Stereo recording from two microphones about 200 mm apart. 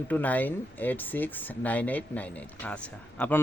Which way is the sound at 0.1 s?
10° left (ahead or behind).